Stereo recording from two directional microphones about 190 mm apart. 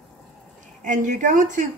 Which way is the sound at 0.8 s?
40° right (ahead or behind).